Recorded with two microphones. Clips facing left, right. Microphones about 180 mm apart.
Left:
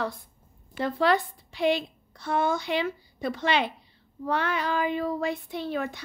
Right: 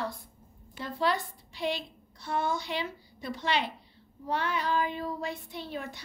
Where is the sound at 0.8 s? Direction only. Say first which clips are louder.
Left 6 dB; 75° left (ahead or behind).